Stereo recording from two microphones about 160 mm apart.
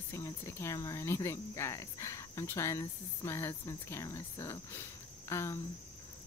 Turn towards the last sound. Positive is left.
turn(degrees=15)  # may be behind; listen again after turning